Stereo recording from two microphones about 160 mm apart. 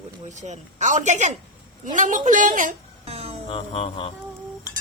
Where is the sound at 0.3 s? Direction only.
45° right (ahead or behind).